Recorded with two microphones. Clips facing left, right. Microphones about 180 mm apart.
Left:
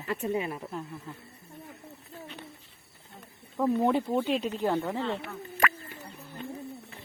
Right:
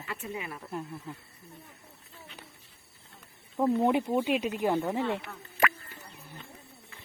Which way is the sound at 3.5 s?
15° right (ahead or behind).